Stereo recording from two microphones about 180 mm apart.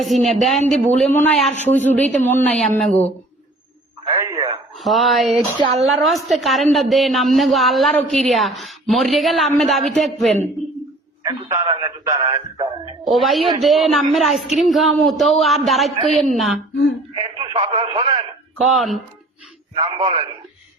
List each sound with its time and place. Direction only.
0.0 s a woman's voice: centre (ahead or behind)
4.2 s a sound: 20° right (ahead or behind)
4.8 s a woman's voice: centre (ahead or behind)
11.2 s a sound: 15° right (ahead or behind)
11.7 s speech: 20° right (ahead or behind)
13.1 s a woman's voice: centre (ahead or behind)
16.7 s speech: 90° left
17.2 s speech: 30° right (ahead or behind)
18.5 s speech: centre (ahead or behind)
19.7 s a man's voice: 30° right (ahead or behind)